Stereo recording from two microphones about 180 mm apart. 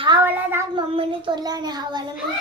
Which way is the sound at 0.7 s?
30° right (ahead or behind).